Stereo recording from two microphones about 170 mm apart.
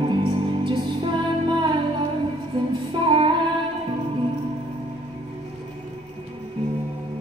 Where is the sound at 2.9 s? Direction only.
30° right (ahead or behind).